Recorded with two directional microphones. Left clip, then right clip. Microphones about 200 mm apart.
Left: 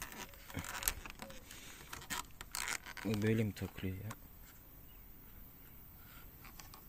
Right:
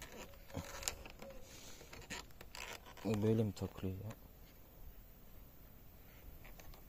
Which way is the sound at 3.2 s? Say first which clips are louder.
Even; 5° left (ahead or behind).